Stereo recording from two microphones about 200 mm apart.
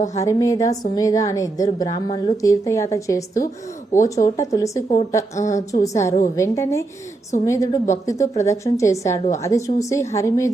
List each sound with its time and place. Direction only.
0.2 s a woman's voice: 15° left (ahead or behind)
5.5 s a woman's voice: 35° left (ahead or behind)
5.8 s a woman's voice: 15° left (ahead or behind)